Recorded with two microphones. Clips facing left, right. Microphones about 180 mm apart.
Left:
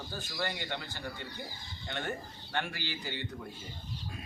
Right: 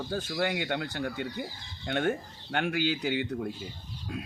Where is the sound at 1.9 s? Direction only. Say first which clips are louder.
Right 9 dB; 80° right.